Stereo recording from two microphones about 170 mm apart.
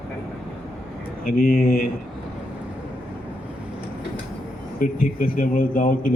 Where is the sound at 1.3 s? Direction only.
55° left (ahead or behind).